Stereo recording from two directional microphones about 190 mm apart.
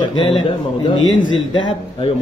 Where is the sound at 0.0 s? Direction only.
25° left (ahead or behind).